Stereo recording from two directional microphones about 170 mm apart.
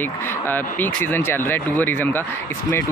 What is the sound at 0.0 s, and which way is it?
Speech, 10° left (ahead or behind).